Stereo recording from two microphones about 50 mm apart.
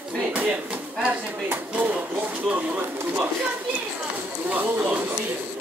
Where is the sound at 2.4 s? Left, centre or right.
Right.